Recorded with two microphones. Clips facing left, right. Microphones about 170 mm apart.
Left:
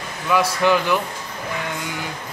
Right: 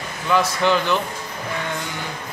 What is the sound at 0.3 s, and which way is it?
Speech, 10° left (ahead or behind).